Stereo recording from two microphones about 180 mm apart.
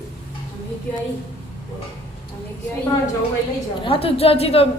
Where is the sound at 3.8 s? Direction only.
30° left (ahead or behind).